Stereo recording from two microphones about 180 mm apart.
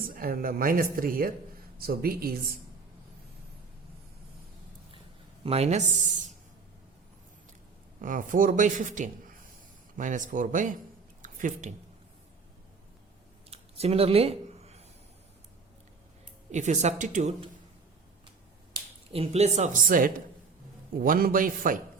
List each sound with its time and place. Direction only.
0.0 s speech: 50° right (ahead or behind)
5.4 s speech: 35° right (ahead or behind)
8.0 s speech: 50° right (ahead or behind)
11.2 s a sound: 45° right (ahead or behind)
13.5 s a sound: 35° right (ahead or behind)
16.5 s speech: 40° right (ahead or behind)
19.1 s speech: 35° right (ahead or behind); by 21.8 s 50° right (ahead or behind)